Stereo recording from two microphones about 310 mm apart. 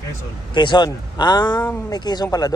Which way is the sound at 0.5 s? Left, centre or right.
Centre.